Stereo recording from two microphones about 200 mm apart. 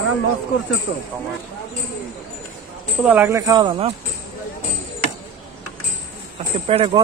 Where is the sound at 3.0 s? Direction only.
10° right (ahead or behind); by 3.9 s 25° right (ahead or behind).